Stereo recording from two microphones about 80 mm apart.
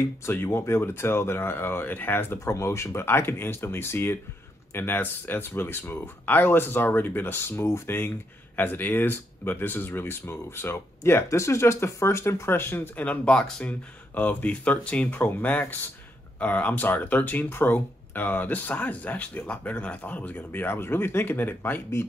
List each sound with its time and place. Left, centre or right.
0.2 s speech: left